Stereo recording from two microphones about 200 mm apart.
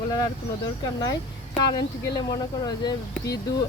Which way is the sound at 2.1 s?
20° left (ahead or behind).